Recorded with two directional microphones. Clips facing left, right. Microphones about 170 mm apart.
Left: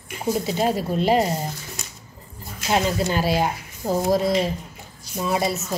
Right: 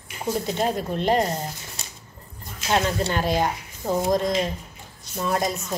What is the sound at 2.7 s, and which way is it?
A woman's voice, 5° left (ahead or behind).